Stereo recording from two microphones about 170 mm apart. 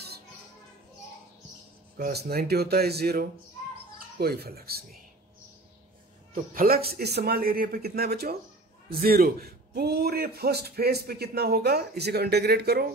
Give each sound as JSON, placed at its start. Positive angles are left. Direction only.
{"t": 2.0, "sound": "a man's voice", "side_deg": -65}
{"t": 6.3, "sound": "a man's voice", "side_deg": -55}